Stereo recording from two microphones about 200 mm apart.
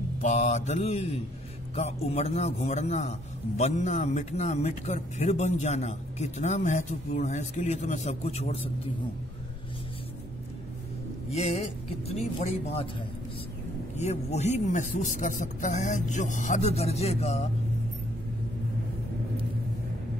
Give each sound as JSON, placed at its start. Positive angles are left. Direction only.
{"t": 0.2, "sound": "a man's voice", "side_deg": 35}
{"t": 11.3, "sound": "speech", "side_deg": 30}
{"t": 13.9, "sound": "a man's voice", "side_deg": 35}